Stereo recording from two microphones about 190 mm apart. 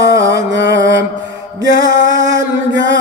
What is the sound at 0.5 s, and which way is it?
Mantra, 70° right (ahead or behind).